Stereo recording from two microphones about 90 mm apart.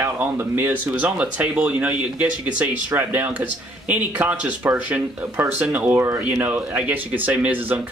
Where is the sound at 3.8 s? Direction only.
15° right (ahead or behind).